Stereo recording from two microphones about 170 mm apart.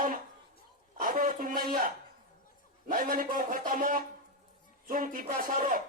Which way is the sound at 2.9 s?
55° right (ahead or behind).